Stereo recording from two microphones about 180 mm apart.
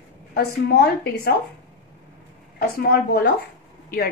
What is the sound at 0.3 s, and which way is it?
A woman's voice, 60° left (ahead or behind).